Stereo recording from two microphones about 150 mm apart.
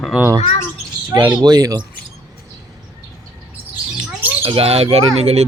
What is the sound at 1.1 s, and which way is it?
Speech, 30° right (ahead or behind).